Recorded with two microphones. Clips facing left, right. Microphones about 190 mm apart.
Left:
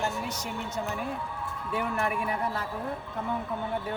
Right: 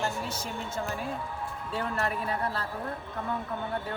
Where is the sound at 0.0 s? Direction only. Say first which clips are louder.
Left 1 dB; 20° left (ahead or behind).